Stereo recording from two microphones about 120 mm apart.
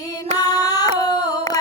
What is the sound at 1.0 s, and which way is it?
Singing, 35° left (ahead or behind).